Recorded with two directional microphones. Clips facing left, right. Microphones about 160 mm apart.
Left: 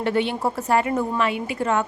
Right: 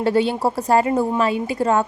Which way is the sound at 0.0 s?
35° right (ahead or behind).